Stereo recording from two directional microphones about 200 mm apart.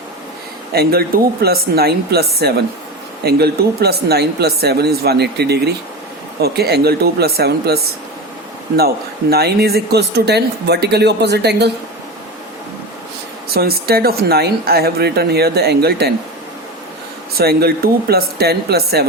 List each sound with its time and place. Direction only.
0.7 s a woman's voice: 50° right (ahead or behind)
3.2 s a woman's voice: 50° right (ahead or behind)
9.3 s speech: 50° right (ahead or behind)
13.5 s a woman's voice: 50° right (ahead or behind)
17.3 s a woman's voice: 50° right (ahead or behind)